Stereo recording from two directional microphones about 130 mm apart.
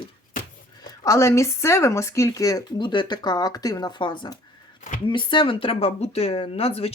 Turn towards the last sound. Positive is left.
turn(degrees=50)  # may be behind; listen again after turning